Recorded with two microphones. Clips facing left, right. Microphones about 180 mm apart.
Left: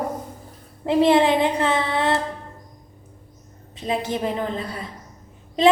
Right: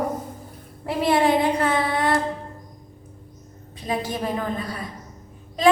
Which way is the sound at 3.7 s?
25° left (ahead or behind).